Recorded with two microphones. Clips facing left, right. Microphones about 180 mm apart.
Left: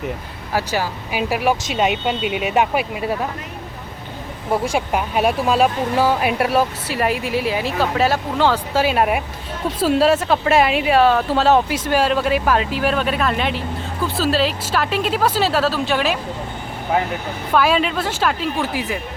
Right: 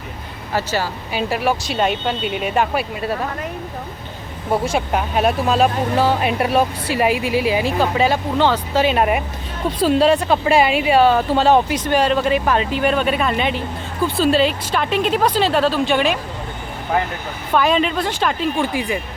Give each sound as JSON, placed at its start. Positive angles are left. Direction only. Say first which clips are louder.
{"t": 0.5, "sound": "speech", "louder": "even", "side_deg": 10}
{"t": 4.6, "sound": "speech", "louder": "even", "side_deg": 10}
{"t": 17.5, "sound": "speech", "louder": "even", "side_deg": 5}